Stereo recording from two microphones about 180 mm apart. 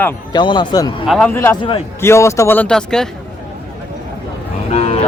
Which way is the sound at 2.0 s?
15° left (ahead or behind).